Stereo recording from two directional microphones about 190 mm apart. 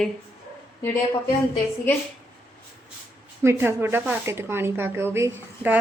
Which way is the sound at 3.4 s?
10° right (ahead or behind).